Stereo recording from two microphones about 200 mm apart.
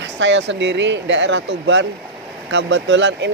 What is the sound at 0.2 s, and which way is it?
Speech, 65° right (ahead or behind).